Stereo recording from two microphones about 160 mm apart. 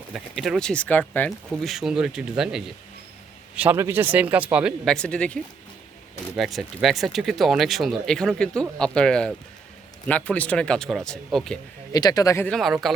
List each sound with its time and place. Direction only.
0.1 s speech: centre (ahead or behind)
1.3 s a man's voice: centre (ahead or behind)
4.9 s speech: 5° left (ahead or behind)
11.9 s speech: 25° left (ahead or behind)
12.5 s speech: centre (ahead or behind)